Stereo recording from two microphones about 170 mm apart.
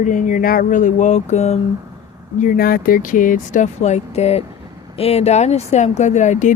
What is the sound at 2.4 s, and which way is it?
Speech, 55° left (ahead or behind).